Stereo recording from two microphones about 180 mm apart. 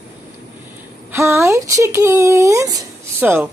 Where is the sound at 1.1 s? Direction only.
15° right (ahead or behind).